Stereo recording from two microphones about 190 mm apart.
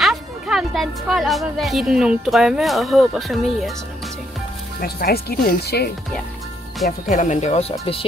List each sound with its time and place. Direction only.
0.0 s speech: centre (ahead or behind)
4.7 s speech: 55° left (ahead or behind)
7.1 s speech: 40° left (ahead or behind)